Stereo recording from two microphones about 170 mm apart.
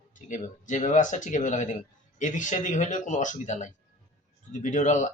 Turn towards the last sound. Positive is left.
turn(degrees=45)  # may be behind; listen again after turning